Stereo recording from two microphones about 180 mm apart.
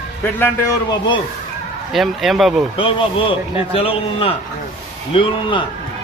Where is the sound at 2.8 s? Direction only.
30° left (ahead or behind).